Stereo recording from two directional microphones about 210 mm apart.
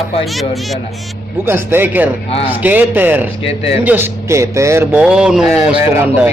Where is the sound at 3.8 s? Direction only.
10° right (ahead or behind).